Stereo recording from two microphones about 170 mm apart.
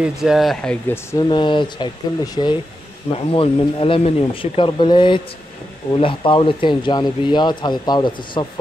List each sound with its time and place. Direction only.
0.0 s speech: 5° right (ahead or behind)
1.1 s speech: 25° left (ahead or behind)